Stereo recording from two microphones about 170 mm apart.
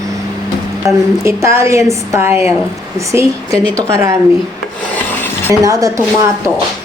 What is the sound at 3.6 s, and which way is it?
Speech, 10° left (ahead or behind).